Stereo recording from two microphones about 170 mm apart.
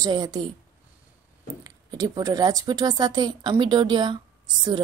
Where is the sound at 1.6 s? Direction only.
20° right (ahead or behind).